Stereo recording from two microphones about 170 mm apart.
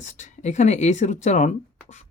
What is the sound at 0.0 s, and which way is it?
Speech, 45° left (ahead or behind).